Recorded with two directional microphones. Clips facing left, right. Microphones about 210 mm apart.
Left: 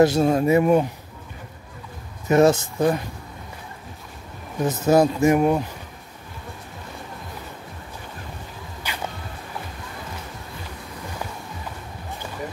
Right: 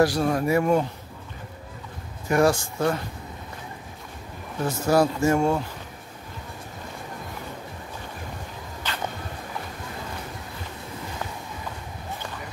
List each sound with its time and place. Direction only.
0.0 s speech: 25° left (ahead or behind)
2.2 s speech: 20° left (ahead or behind)
4.6 s speech: 20° left (ahead or behind)
8.8 s music: 10° left (ahead or behind)